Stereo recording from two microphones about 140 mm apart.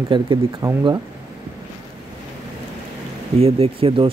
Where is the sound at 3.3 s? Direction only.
45° right (ahead or behind).